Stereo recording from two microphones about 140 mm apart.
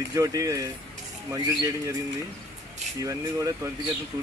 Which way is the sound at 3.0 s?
25° right (ahead or behind).